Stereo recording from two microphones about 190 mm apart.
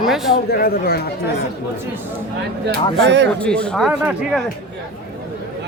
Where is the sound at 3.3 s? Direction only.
5° left (ahead or behind).